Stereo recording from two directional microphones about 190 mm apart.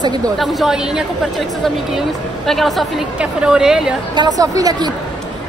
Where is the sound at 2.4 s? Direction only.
Centre (ahead or behind).